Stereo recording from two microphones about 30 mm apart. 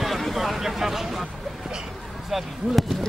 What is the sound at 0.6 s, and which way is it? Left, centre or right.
Vehicle, centre.